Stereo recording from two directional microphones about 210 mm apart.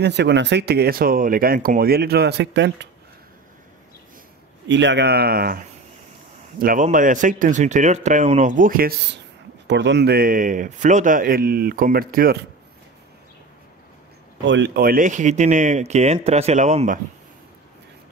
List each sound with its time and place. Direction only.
0.0 s speech: 55° right (ahead or behind)
4.6 s speech: 60° right (ahead or behind)
6.6 s speech: 40° right (ahead or behind)
9.7 s speech: 55° right (ahead or behind)
14.4 s speech: 60° right (ahead or behind)
14.8 s speech: 40° right (ahead or behind)